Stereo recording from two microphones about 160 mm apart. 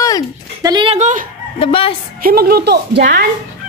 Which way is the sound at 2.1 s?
65° right (ahead or behind).